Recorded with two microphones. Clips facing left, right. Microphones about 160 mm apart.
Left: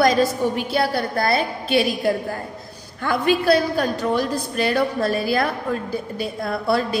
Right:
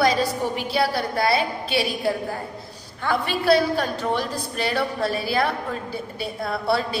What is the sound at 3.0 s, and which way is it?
A woman's voice, 45° left (ahead or behind).